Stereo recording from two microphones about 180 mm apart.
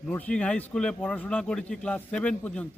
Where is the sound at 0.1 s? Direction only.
10° left (ahead or behind).